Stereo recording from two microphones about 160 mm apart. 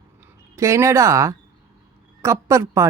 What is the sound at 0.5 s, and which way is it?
A woman's voice, 20° right (ahead or behind).